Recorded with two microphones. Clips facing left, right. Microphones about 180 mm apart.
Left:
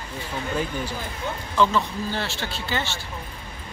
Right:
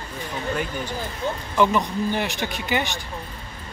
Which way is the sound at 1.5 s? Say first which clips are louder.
Right 1 dB; 15° right (ahead or behind).